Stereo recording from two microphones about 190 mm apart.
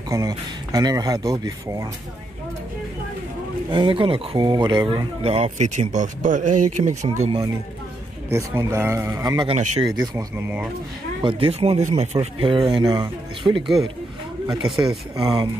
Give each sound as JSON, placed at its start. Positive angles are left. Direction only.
{"t": 0.1, "sound": "speech", "side_deg": -20}
{"t": 3.7, "sound": "speech", "side_deg": -25}
{"t": 7.2, "sound": "a man's voice", "side_deg": -20}
{"t": 9.5, "sound": "speech", "side_deg": -30}
{"t": 10.1, "sound": "a man's voice", "side_deg": -10}
{"t": 11.2, "sound": "speech", "side_deg": -30}
{"t": 14.6, "sound": "speech", "side_deg": -5}
{"t": 15.1, "sound": "speech", "side_deg": -20}